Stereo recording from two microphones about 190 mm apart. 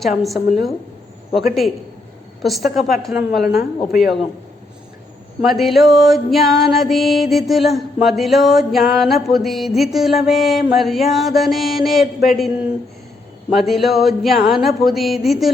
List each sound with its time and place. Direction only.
0.2 s music: centre (ahead or behind)
2.4 s music: centre (ahead or behind)
3.4 s speech: 55° left (ahead or behind)
3.9 s music: centre (ahead or behind)
5.5 s music: centre (ahead or behind)
13.5 s music: centre (ahead or behind)